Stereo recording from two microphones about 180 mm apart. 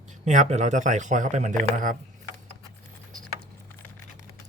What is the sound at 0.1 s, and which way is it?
A man's voice, 40° right (ahead or behind).